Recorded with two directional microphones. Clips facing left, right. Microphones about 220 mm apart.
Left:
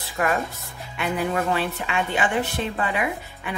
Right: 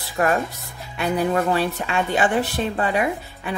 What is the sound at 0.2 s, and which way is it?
Speech, 35° right (ahead or behind).